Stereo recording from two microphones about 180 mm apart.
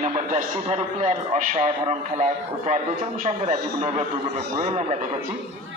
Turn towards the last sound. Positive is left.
turn(degrees=-35)  # may be behind; listen again after turning